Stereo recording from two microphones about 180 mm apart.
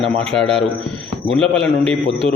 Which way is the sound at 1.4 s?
5° left (ahead or behind).